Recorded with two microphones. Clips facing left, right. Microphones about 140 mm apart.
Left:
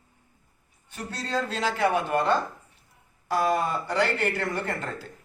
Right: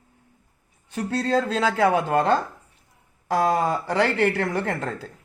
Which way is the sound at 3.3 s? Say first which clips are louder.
Right 3 dB; 90° right.